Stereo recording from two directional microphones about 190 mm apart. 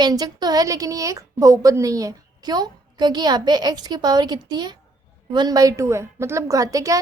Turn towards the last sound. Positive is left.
turn(degrees=-15)  # may be behind; listen again after turning